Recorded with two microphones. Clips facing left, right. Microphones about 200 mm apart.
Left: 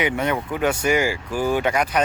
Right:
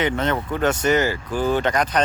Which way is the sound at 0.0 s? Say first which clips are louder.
Even; 10° left (ahead or behind).